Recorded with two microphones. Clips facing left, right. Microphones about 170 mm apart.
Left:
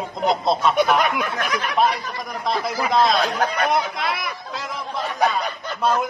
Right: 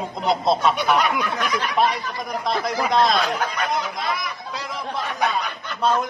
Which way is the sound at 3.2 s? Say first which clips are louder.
Left 2 dB; 40° left (ahead or behind).